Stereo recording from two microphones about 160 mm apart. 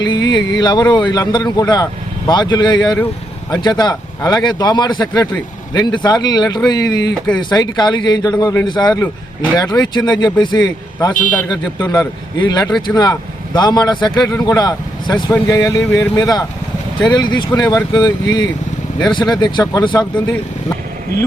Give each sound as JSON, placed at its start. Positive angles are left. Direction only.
{"t": 0.0, "sound": "a man's voice", "side_deg": 25}